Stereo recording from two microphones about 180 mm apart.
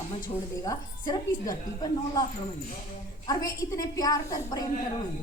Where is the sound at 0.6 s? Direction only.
20° left (ahead or behind).